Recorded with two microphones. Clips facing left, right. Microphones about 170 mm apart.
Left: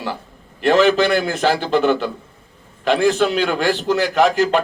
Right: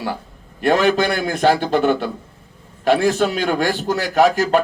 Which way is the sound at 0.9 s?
45° right (ahead or behind).